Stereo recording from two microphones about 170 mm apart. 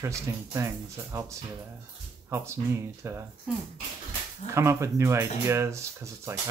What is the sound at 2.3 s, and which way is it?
Speech, 15° right (ahead or behind).